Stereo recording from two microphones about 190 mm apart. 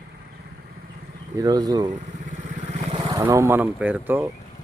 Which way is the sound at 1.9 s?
40° right (ahead or behind).